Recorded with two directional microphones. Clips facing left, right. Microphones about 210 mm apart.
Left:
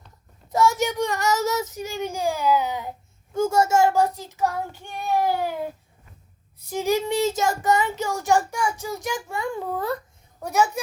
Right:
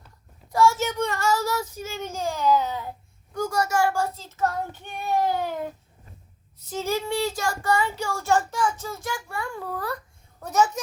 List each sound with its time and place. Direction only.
0.5 s a child's voice: 15° left (ahead or behind)
10.4 s speech: 10° left (ahead or behind)